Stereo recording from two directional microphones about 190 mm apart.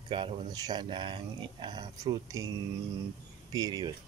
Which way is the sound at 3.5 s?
20° right (ahead or behind).